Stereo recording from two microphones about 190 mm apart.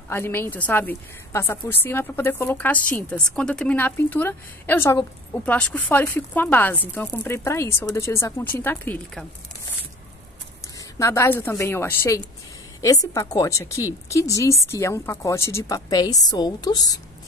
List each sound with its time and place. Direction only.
0.1 s a woman's voice: 10° left (ahead or behind)
10.8 s a woman's voice: 15° left (ahead or behind)